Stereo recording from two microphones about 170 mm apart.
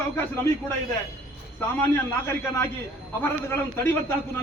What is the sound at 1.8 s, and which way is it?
A man's voice, 15° left (ahead or behind).